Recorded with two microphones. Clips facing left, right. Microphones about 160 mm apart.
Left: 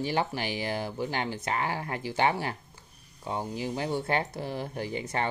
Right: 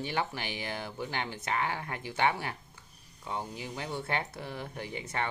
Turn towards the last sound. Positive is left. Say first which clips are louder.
# left 5 dB
turn(degrees=35)  # may be behind; listen again after turning